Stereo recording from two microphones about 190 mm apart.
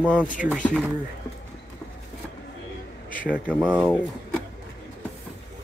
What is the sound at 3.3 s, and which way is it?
Speech, 5° right (ahead or behind).